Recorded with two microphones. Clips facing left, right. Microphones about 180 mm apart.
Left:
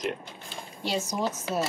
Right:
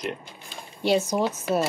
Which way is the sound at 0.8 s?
60° right (ahead or behind).